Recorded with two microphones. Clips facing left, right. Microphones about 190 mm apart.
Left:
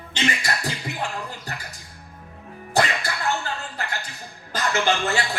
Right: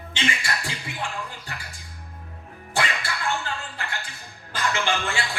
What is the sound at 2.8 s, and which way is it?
Music, 40° left (ahead or behind).